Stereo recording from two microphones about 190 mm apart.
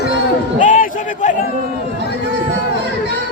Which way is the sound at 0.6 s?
40° left (ahead or behind).